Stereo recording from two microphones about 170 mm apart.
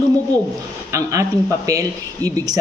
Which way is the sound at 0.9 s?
20° right (ahead or behind).